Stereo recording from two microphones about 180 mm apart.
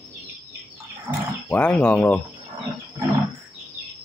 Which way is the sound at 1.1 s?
20° right (ahead or behind).